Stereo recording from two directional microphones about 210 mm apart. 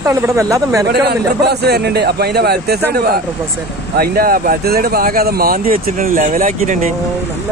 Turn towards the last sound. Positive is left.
turn(degrees=-40)  # may be behind; listen again after turning